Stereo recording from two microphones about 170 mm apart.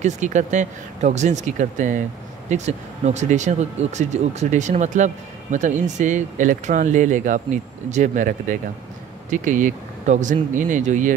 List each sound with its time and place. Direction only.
0.0 s speech: 45° right (ahead or behind)